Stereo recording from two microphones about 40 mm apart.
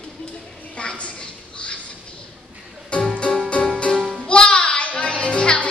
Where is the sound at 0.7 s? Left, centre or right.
Left.